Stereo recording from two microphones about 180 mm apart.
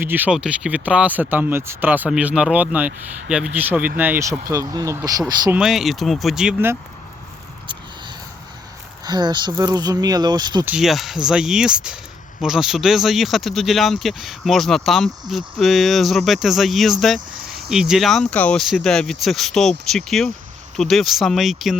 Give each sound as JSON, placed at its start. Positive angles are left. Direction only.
{"t": 0.0, "sound": "speech", "side_deg": -10}
{"t": 5.5, "sound": "speech", "side_deg": -5}
{"t": 9.0, "sound": "speech", "side_deg": -25}
{"t": 10.7, "sound": "speech", "side_deg": 0}